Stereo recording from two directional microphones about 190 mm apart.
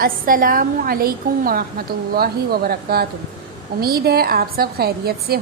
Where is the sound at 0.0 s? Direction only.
45° right (ahead or behind).